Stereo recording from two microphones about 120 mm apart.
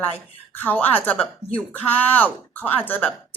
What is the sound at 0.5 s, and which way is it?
Speech, 15° left (ahead or behind).